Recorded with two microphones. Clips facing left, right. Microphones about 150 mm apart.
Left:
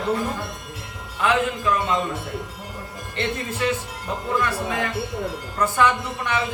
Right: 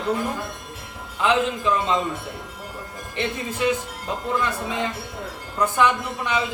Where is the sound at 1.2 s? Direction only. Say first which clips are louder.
Even; 20° right (ahead or behind).